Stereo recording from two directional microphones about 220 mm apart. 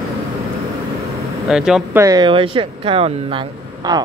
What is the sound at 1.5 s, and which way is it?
Speech, centre (ahead or behind).